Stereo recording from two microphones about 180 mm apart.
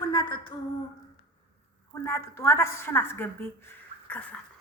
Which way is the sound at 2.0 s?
15° left (ahead or behind).